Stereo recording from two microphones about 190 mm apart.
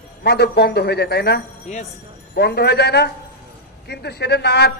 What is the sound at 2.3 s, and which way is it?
A woman's voice, 60° left (ahead or behind).